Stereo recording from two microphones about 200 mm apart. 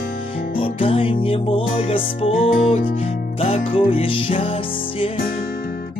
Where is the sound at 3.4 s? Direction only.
30° left (ahead or behind).